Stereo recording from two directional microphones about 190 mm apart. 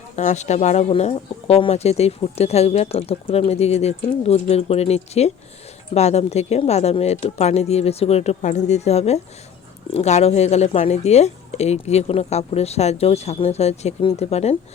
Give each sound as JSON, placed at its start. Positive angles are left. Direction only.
{"t": 0.2, "sound": "speech", "side_deg": 35}